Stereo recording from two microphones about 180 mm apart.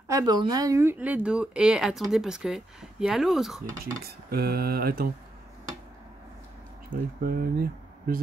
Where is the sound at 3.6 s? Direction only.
55° right (ahead or behind).